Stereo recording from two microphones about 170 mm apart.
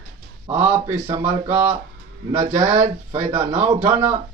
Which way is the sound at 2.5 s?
15° right (ahead or behind).